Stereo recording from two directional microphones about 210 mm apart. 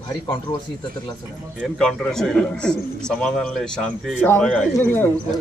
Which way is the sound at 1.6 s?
Centre (ahead or behind).